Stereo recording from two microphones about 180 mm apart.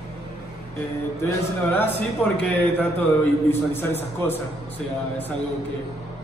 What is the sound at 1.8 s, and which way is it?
A man's voice, 10° left (ahead or behind).